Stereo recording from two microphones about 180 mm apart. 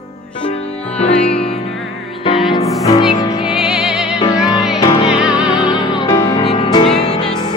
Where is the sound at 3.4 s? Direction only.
5° right (ahead or behind).